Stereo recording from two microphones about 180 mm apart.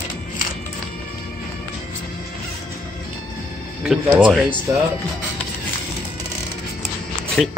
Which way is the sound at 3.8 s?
5° right (ahead or behind).